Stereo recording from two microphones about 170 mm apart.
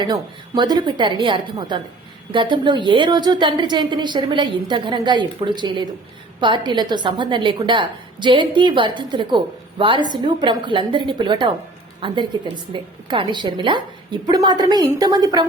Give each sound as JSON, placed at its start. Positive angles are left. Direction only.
{"t": 0.0, "sound": "a woman's voice", "side_deg": -25}